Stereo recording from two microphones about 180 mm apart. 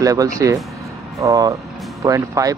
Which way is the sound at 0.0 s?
20° right (ahead or behind).